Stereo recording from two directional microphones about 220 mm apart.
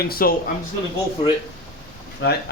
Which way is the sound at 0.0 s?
40° left (ahead or behind).